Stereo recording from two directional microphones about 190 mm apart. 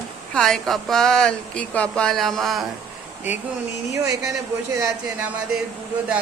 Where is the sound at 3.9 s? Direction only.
15° right (ahead or behind).